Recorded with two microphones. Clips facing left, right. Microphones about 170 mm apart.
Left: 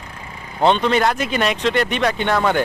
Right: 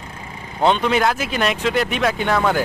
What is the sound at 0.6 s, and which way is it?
Speech, 5° right (ahead or behind).